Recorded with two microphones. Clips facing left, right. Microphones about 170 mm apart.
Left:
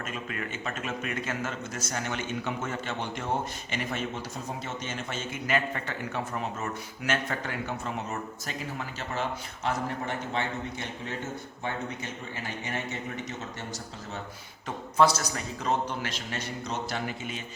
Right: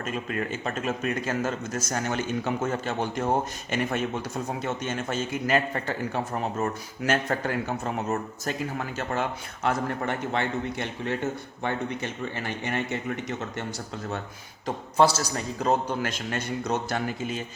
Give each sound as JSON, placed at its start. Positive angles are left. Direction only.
{"t": 0.0, "sound": "a man's voice", "side_deg": -35}
{"t": 14.9, "sound": "speech", "side_deg": -30}